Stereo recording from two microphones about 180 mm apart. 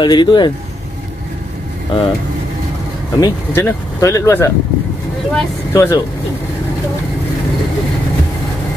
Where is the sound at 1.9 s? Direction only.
30° left (ahead or behind).